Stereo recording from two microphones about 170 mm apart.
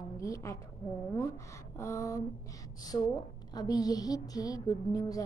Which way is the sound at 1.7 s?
15° left (ahead or behind).